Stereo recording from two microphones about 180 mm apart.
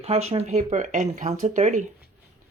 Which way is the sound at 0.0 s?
35° right (ahead or behind).